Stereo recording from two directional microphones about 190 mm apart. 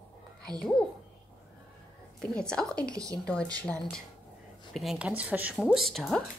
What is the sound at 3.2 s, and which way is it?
Speech, 5° left (ahead or behind).